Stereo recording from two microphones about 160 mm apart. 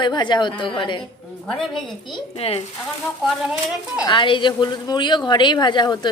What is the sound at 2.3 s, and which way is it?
Speech, 40° left (ahead or behind).